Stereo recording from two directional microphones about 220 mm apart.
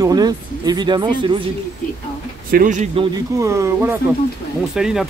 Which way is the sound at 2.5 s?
35° right (ahead or behind).